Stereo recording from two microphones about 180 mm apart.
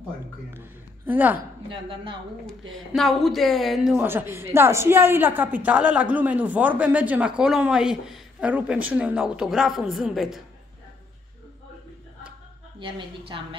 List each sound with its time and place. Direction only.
0.5 s a man's voice: 10° right (ahead or behind)
1.7 s a woman's voice: 30° right (ahead or behind)
2.7 s a woman's voice: centre (ahead or behind)
12.7 s a woman's voice: 30° right (ahead or behind)